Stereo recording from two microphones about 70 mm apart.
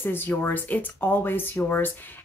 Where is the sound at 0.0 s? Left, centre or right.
Left.